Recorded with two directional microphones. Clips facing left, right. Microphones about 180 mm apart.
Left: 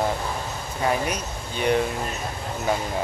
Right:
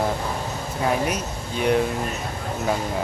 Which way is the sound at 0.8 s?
Centre (ahead or behind).